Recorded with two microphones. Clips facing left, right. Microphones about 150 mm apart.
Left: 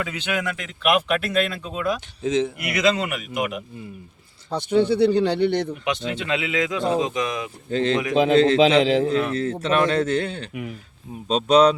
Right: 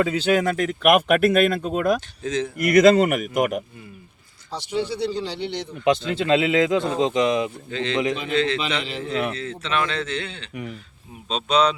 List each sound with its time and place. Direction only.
0.0 s speech: 35° right (ahead or behind)
2.2 s speech: 20° left (ahead or behind)
2.6 s speech: 45° right (ahead or behind)
4.5 s speech: 55° left (ahead or behind)
6.1 s speech: 30° right (ahead or behind)
7.7 s a man's voice: 40° left (ahead or behind)
8.1 s a man's voice: 90° left
9.3 s a man's voice: 45° left (ahead or behind)
10.5 s speech: 5° left (ahead or behind)
11.3 s speech: 40° left (ahead or behind)